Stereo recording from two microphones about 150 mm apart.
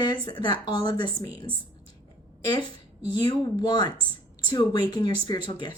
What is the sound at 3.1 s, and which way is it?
Speech, 30° left (ahead or behind).